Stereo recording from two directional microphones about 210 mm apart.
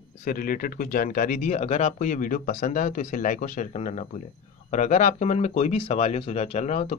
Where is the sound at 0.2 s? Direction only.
40° left (ahead or behind).